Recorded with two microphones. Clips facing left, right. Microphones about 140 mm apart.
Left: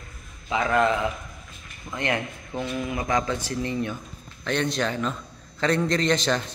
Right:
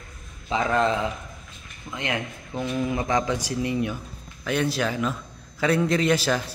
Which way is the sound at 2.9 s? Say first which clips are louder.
Even; 25° right (ahead or behind).